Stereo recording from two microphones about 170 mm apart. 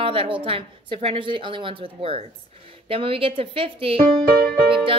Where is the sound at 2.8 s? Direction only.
30° right (ahead or behind).